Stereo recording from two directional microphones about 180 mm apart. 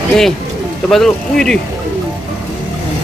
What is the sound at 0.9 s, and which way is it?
Speech, centre (ahead or behind).